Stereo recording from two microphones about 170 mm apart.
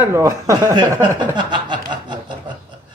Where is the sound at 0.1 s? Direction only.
15° right (ahead or behind).